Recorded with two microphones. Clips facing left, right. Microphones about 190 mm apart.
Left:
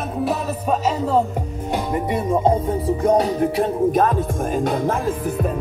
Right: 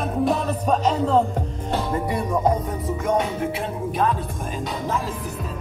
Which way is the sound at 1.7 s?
20° left (ahead or behind).